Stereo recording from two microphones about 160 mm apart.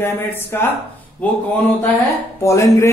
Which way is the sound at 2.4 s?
20° left (ahead or behind).